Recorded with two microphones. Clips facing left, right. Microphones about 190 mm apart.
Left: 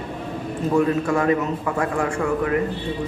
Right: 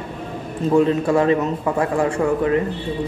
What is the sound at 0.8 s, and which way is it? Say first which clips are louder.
A man's voice: right 4 dB; 25° right (ahead or behind).